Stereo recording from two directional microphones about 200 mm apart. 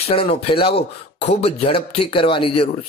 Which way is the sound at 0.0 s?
30° left (ahead or behind).